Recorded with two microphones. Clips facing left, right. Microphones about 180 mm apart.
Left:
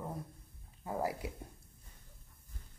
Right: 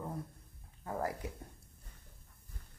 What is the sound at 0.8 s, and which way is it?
Speech, 10° left (ahead or behind).